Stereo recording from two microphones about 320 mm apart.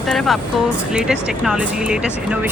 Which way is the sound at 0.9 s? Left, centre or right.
Centre.